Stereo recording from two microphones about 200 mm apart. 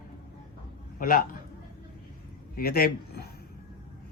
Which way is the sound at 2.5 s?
50° left (ahead or behind).